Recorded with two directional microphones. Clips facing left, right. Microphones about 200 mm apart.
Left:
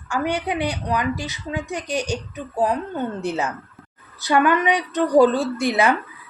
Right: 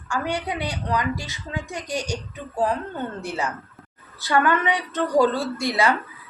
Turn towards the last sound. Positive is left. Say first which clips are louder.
# left 3 dB
turn(degrees=20)  # may be behind; listen again after turning